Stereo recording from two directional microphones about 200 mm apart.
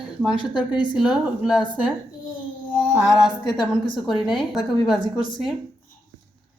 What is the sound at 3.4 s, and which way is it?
Speech, 20° left (ahead or behind).